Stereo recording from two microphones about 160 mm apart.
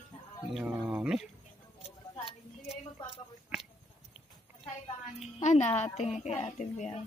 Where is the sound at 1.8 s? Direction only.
40° left (ahead or behind).